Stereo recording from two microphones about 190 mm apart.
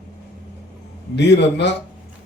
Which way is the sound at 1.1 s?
65° left (ahead or behind).